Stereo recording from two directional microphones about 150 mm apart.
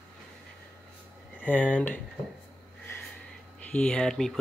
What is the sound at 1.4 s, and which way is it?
Speech, 10° left (ahead or behind).